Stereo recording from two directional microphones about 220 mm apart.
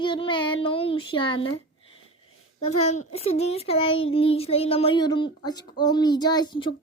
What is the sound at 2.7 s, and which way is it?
Speech, 90° left.